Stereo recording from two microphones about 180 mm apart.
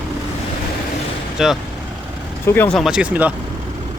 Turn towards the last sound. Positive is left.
turn(degrees=-10)  # may be behind; listen again after turning